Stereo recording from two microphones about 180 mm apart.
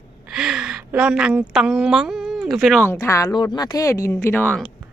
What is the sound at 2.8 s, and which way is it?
Speech, 15° left (ahead or behind).